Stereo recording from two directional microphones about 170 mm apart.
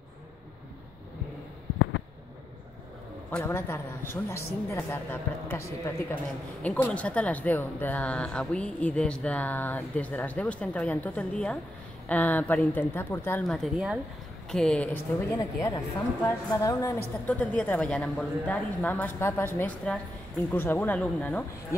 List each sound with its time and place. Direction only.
3.3 s speech: 10° left (ahead or behind)
13.5 s a woman's voice: centre (ahead or behind)
15.3 s speech: 20° left (ahead or behind)